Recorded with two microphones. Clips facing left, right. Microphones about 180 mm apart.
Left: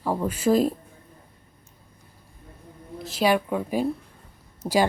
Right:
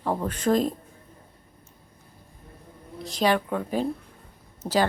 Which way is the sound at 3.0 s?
5° left (ahead or behind).